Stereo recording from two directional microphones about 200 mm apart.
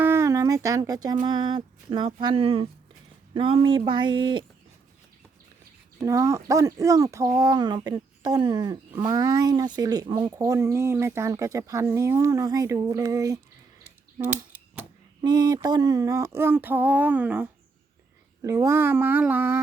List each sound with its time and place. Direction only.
0.0 s a sound: 10° right (ahead or behind)
1.2 s speech: 20° right (ahead or behind)
6.0 s speech: 15° right (ahead or behind)
14.3 s typewriter: 10° right (ahead or behind)
15.2 s speech: 20° right (ahead or behind)